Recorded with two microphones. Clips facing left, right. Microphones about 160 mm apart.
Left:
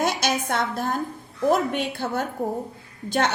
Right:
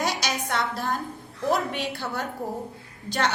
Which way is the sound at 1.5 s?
50° left (ahead or behind).